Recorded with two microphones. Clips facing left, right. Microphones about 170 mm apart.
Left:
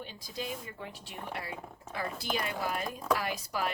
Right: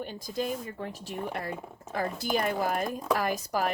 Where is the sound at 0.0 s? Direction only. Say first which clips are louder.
Right 7 dB; 50° right (ahead or behind).